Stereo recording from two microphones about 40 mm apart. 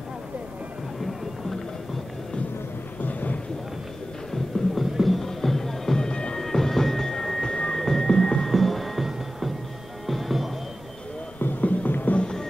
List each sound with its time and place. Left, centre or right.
3.0 s a sound: left
4.6 s music: centre
4.9 s music: centre
6.0 s music: left
6.4 s music: centre
7.5 s music: left
8.5 s music: centre
11.6 s music: left